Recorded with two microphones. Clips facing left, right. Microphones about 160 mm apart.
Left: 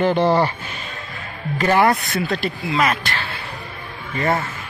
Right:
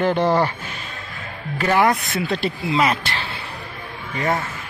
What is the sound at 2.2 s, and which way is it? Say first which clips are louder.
Speech: right 3 dB; 25° right (ahead or behind).